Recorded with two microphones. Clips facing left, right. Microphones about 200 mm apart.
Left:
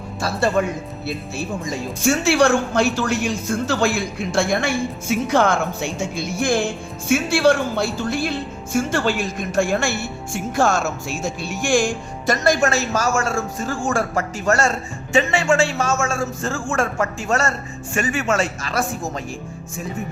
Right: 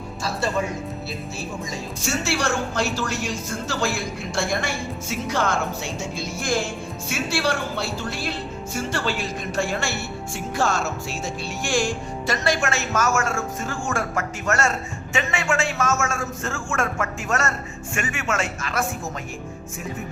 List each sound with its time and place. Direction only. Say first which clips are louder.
0.2 s a woman's voice: left 5 dB; 60° left (ahead or behind)
2.0 s a woman's voice: left 10 dB; 55° left (ahead or behind)
4.3 s a woman's voice: left 6 dB; 55° left (ahead or behind); by 19.2 s 35° left (ahead or behind)